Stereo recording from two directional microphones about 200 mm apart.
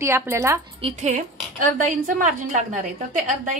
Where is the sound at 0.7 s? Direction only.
30° right (ahead or behind).